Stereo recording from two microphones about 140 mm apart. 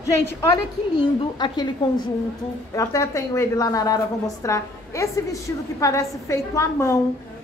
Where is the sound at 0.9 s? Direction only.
30° left (ahead or behind).